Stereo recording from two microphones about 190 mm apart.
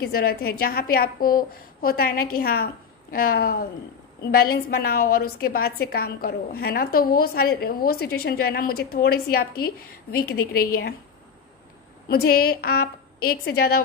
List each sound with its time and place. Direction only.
0.0 s a woman's voice: 55° left (ahead or behind)
12.1 s a woman's voice: 55° left (ahead or behind)